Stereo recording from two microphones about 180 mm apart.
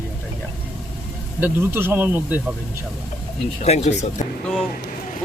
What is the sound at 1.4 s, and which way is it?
Speech, 10° right (ahead or behind).